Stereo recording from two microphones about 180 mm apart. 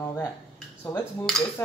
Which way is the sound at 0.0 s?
15° left (ahead or behind).